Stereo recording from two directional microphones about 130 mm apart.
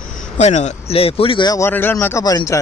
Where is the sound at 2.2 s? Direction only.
30° left (ahead or behind).